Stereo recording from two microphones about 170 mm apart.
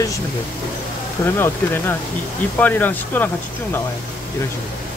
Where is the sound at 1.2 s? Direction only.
15° left (ahead or behind).